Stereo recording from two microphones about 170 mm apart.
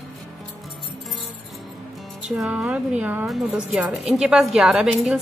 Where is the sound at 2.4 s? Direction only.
5° right (ahead or behind).